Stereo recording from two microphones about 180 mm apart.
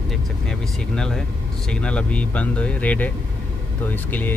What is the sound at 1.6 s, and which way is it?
Speech, 5° left (ahead or behind).